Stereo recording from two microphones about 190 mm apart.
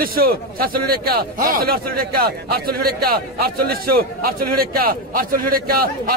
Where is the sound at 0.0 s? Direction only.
50° right (ahead or behind).